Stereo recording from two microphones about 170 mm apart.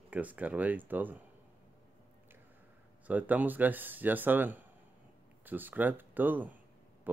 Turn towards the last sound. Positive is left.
turn(degrees=-10)  # may be behind; listen again after turning